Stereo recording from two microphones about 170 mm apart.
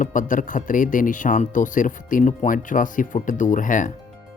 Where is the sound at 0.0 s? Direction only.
50° left (ahead or behind).